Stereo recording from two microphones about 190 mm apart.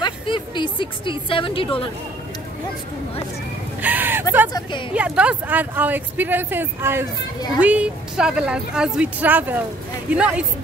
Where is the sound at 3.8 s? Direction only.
10° right (ahead or behind).